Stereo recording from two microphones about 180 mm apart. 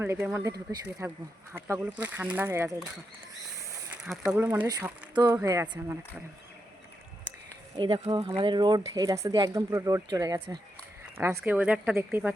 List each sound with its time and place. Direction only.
0.0 s speech: 10° right (ahead or behind)
4.3 s speech: 10° right (ahead or behind)
7.8 s speech: 25° right (ahead or behind); by 12.3 s 10° right (ahead or behind)